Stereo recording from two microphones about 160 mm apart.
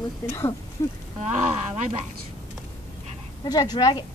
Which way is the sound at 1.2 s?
45° right (ahead or behind).